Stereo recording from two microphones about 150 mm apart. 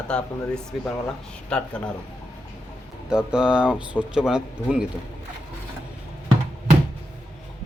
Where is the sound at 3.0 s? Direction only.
5° right (ahead or behind).